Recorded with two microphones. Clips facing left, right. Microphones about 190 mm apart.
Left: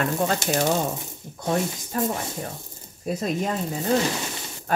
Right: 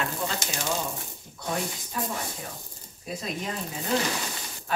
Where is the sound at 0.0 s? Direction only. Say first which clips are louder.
Left 7 dB; 55° left (ahead or behind).